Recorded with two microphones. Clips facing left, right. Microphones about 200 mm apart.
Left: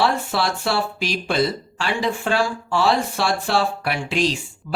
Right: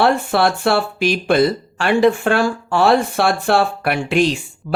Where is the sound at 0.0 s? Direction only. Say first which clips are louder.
Right 6 dB; 60° right (ahead or behind).